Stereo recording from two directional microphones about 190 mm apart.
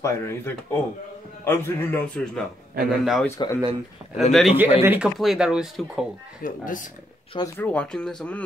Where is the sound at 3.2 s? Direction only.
15° left (ahead or behind).